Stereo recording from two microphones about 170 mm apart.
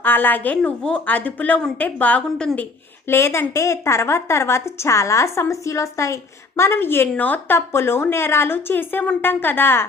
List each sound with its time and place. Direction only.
0.0 s a woman's voice: 10° left (ahead or behind)